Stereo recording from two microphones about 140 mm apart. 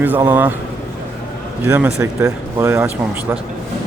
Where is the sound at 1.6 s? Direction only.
15° right (ahead or behind).